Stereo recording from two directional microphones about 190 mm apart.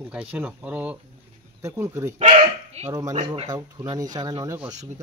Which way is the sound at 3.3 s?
20° right (ahead or behind).